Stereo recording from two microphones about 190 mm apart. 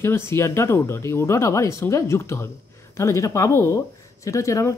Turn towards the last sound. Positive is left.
turn(degrees=15)  # may be behind; listen again after turning